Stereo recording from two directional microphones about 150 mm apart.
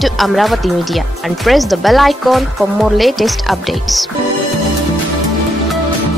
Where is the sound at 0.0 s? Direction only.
Centre (ahead or behind).